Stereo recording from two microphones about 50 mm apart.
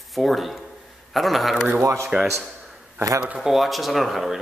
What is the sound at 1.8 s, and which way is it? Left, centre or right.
Speech, right.